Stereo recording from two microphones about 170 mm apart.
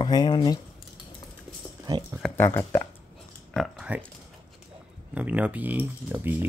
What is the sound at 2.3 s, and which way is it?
Speech, 15° left (ahead or behind).